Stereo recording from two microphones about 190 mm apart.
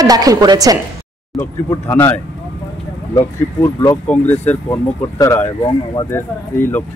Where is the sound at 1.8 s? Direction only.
10° left (ahead or behind).